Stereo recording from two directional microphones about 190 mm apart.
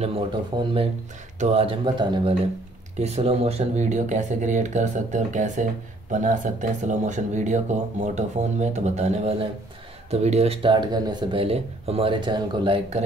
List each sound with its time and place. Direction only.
0.5 s speech: 25° right (ahead or behind)